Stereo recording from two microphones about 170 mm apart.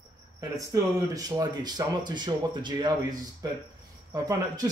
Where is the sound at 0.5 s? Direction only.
20° right (ahead or behind).